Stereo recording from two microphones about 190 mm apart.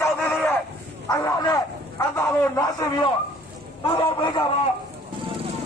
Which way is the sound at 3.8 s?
25° left (ahead or behind).